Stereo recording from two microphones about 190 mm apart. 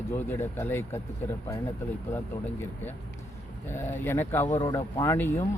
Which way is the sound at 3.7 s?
10° left (ahead or behind).